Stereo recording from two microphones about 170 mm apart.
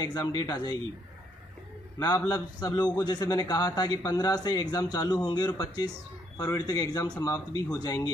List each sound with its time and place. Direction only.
0.0 s a man's voice: 25° left (ahead or behind)
2.0 s a man's voice: 20° left (ahead or behind)